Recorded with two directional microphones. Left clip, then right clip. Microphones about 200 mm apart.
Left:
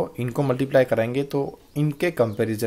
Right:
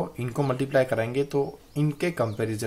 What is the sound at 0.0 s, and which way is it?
Speech, 25° left (ahead or behind).